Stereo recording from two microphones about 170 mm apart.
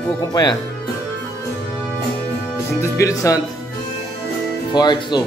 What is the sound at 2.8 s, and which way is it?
Speech, 15° left (ahead or behind).